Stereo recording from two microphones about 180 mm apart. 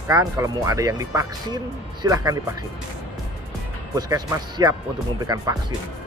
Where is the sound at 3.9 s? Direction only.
20° right (ahead or behind).